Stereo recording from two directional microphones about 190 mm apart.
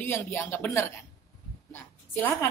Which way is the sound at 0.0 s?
15° left (ahead or behind).